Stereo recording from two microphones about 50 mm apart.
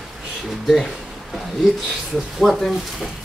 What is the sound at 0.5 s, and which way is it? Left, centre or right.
Speech, centre.